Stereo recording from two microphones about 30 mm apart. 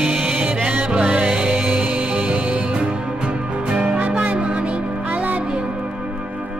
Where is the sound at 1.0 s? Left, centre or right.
Right.